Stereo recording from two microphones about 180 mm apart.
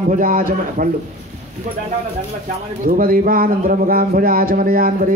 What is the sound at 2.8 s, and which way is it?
A man's voice, 50° right (ahead or behind).